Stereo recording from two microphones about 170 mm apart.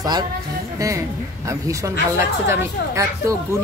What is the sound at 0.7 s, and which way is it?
A woman's voice, 20° right (ahead or behind).